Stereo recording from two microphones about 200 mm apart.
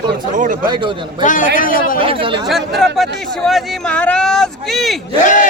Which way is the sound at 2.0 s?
25° right (ahead or behind).